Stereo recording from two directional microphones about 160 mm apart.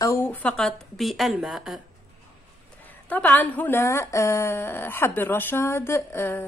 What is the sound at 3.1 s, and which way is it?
Speech, 10° left (ahead or behind).